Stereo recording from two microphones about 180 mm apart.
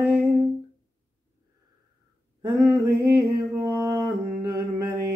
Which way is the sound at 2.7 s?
15° right (ahead or behind).